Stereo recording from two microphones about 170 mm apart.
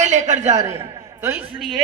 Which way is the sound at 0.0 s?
45° right (ahead or behind).